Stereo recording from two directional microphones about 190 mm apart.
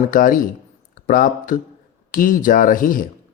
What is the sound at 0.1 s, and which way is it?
Speech, 45° left (ahead or behind).